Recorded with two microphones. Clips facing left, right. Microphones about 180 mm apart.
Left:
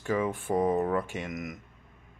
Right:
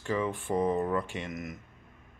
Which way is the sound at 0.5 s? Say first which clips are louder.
Left 2 dB; 20° left (ahead or behind).